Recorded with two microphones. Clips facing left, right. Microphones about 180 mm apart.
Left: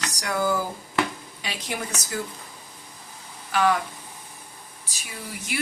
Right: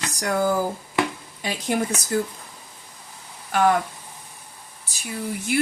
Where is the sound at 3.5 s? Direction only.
50° right (ahead or behind).